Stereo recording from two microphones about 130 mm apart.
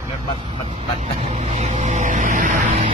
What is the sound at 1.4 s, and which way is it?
Vehicle, 60° right (ahead or behind).